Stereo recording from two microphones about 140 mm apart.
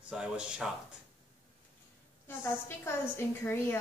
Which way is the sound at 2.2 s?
15° left (ahead or behind).